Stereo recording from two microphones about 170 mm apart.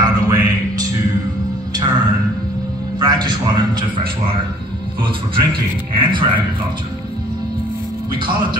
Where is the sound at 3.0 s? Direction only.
25° right (ahead or behind).